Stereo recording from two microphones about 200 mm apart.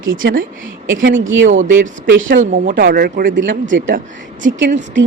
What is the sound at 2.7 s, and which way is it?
Speech, 50° right (ahead or behind).